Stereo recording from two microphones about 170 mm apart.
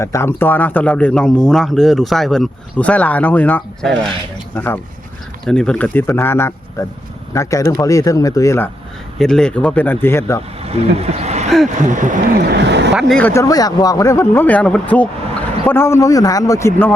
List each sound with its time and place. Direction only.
0.0 s speech: 15° left (ahead or behind)
9.1 s speech: 5° left (ahead or behind)
10.6 s speech: 35° right (ahead or behind)
12.5 s speech: 90° right
13.0 s speech: 5° left (ahead or behind)